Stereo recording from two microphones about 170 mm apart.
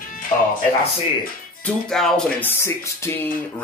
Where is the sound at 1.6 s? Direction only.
5° left (ahead or behind).